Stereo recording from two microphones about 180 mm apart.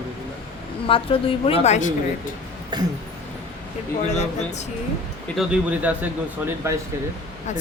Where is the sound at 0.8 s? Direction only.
30° left (ahead or behind).